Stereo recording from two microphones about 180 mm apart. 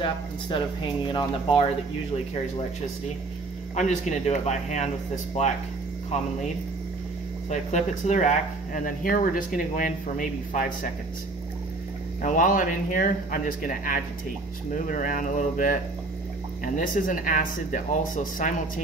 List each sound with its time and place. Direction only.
1.1 s speech: 30° left (ahead or behind)
3.7 s speech: 40° left (ahead or behind)
12.2 s speech: 45° left (ahead or behind)